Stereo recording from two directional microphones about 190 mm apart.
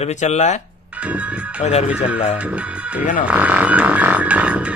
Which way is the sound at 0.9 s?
10° right (ahead or behind).